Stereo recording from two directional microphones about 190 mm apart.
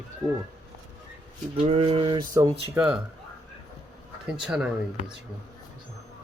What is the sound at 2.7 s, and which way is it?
Speech, 5° right (ahead or behind).